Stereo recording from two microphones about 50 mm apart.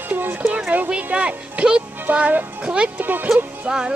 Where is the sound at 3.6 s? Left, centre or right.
Centre.